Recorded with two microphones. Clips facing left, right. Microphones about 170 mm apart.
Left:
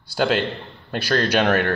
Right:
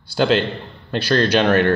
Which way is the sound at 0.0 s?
10° left (ahead or behind).